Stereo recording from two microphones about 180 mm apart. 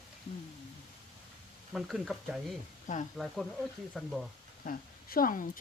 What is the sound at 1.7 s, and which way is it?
Frying, centre (ahead or behind).